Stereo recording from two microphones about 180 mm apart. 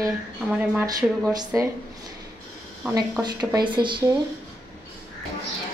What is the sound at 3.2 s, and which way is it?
Speech, 25° right (ahead or behind).